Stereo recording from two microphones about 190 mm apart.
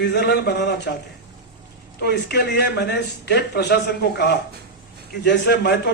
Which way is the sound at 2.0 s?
60° left (ahead or behind).